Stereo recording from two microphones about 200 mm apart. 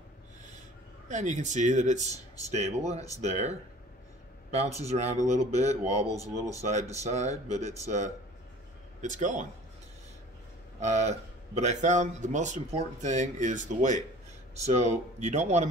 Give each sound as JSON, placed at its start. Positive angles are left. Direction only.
{"t": 1.0, "sound": "speech", "side_deg": -35}
{"t": 6.0, "sound": "speech", "side_deg": 15}
{"t": 7.0, "sound": "speech", "side_deg": -35}
{"t": 10.8, "sound": "speech", "side_deg": -35}